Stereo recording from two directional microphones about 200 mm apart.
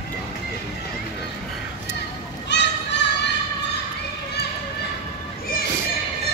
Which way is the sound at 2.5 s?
60° left (ahead or behind).